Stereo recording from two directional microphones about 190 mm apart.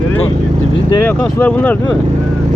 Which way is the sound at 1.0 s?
10° left (ahead or behind).